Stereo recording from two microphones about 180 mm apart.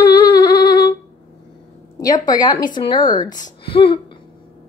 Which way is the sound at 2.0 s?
20° left (ahead or behind).